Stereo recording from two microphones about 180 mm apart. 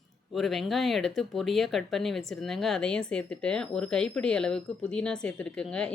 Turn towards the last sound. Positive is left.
turn(degrees=5)  # may be behind; listen again after turning